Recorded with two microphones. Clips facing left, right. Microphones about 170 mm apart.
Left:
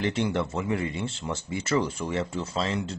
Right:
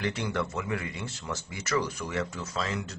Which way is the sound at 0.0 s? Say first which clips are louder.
Left 4 dB; 25° left (ahead or behind).